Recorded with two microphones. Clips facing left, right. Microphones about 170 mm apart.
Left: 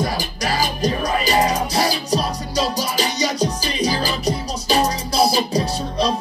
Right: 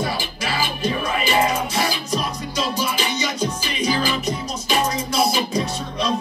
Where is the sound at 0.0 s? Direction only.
40° left (ahead or behind).